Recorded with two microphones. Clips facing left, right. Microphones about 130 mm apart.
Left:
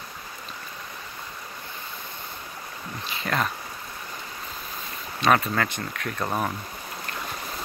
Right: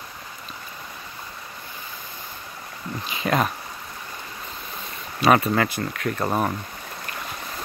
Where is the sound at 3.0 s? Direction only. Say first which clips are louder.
Right 4 dB; 15° right (ahead or behind).